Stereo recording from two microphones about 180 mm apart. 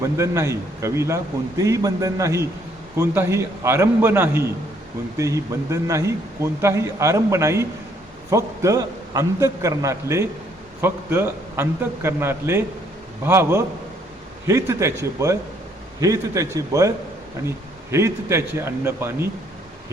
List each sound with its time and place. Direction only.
0.0 s a man's voice: 15° right (ahead or behind)
17.9 s a man's voice: 15° right (ahead or behind)